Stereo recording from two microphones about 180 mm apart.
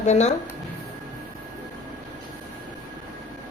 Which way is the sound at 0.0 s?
40° left (ahead or behind).